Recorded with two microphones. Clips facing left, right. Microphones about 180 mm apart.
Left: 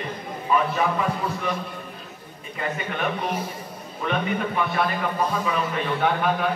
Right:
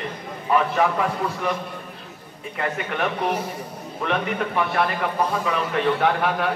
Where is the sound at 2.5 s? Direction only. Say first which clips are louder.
Right 2 dB; 65° right (ahead or behind).